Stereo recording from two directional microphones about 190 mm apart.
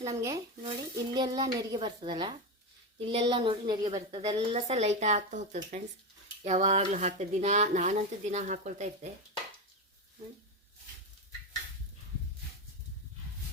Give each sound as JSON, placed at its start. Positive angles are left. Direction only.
{"t": 0.0, "sound": "a woman's voice", "side_deg": -15}
{"t": 4.7, "sound": "speech", "side_deg": -35}